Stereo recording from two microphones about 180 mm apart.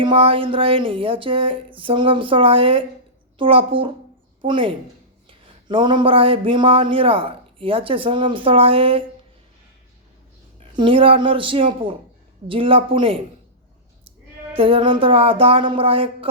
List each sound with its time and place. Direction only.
0.0 s a woman's voice: 30° right (ahead or behind)
10.6 s speech: 30° right (ahead or behind)
14.5 s speech: 30° right (ahead or behind)